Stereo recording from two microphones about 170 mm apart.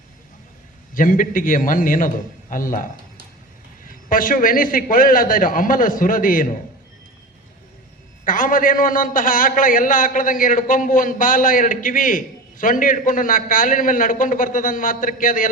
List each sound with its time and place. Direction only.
0.9 s a man's voice: 55° left (ahead or behind)
4.1 s a man's voice: 55° left (ahead or behind)
8.2 s a man's voice: 55° left (ahead or behind)